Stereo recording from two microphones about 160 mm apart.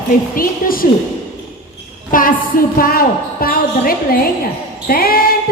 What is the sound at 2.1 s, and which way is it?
A woman's voice, 60° left (ahead or behind).